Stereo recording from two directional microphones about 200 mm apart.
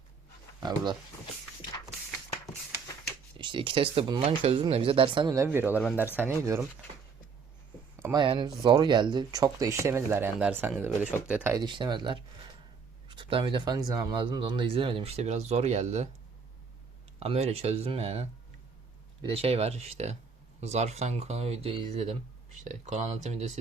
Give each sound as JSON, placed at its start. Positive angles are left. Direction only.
{"t": 3.3, "sound": "speech", "side_deg": -25}
{"t": 7.9, "sound": "speech", "side_deg": -15}
{"t": 11.5, "sound": "speech", "side_deg": -20}
{"t": 17.2, "sound": "speech", "side_deg": -30}